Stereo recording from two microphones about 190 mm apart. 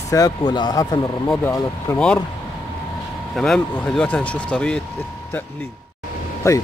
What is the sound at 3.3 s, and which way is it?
Speech, centre (ahead or behind).